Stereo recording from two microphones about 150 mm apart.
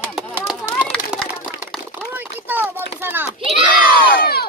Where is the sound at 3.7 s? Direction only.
75° left (ahead or behind).